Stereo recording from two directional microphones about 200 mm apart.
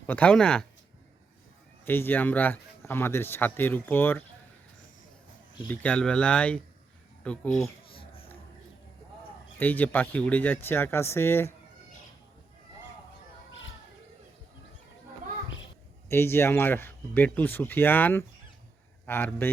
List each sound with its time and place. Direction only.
0.1 s speech: 5° left (ahead or behind)
1.8 s speech: 10° left (ahead or behind)
5.6 s speech: 5° left (ahead or behind)
7.9 s a sound: 25° left (ahead or behind)
9.6 s speech: 10° left (ahead or behind)
16.0 s speech: 10° left (ahead or behind)